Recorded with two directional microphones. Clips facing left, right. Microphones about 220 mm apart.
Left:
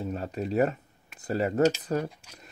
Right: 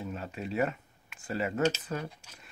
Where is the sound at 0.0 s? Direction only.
40° left (ahead or behind).